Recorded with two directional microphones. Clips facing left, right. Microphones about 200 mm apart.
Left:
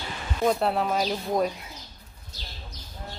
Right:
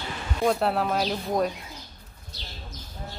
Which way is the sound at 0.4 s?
Centre (ahead or behind).